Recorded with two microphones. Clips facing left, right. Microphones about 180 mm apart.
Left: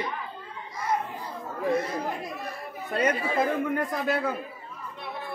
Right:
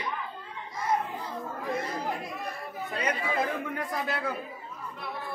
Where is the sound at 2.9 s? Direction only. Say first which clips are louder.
Left 5 dB; 50° left (ahead or behind).